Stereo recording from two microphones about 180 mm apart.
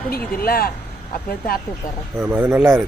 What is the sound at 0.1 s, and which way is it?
Speech, 60° left (ahead or behind).